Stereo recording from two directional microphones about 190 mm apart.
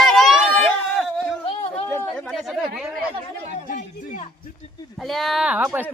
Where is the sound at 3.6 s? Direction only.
40° left (ahead or behind).